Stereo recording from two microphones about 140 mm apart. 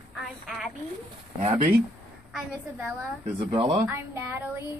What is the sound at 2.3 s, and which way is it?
Speech, 5° right (ahead or behind).